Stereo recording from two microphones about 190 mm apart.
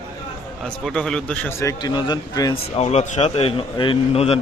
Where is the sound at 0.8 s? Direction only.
5° left (ahead or behind); by 2.5 s 20° left (ahead or behind).